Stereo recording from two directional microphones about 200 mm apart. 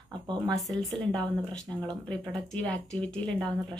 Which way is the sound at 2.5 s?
5° left (ahead or behind).